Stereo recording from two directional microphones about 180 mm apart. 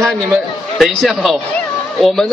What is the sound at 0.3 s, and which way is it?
Speech, centre (ahead or behind).